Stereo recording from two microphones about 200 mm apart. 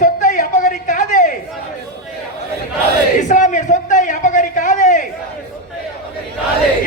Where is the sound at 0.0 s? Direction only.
40° left (ahead or behind).